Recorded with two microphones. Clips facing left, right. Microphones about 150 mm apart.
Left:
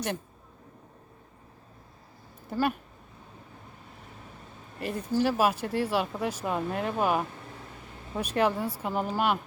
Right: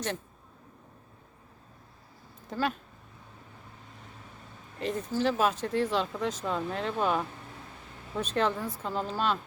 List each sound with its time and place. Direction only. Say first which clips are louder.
2.5 s speech: left 3 dB; 10° left (ahead or behind)
4.8 s speech: left 2 dB; 10° left (ahead or behind)